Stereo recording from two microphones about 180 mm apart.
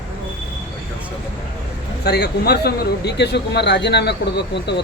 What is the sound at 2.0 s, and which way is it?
Speech, 65° left (ahead or behind).